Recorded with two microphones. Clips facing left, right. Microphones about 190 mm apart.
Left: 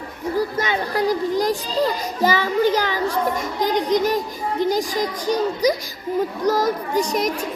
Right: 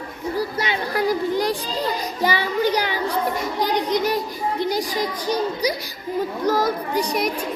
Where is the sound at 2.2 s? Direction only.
40° left (ahead or behind).